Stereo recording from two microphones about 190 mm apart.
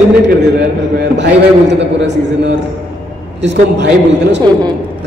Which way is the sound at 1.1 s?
65° right (ahead or behind).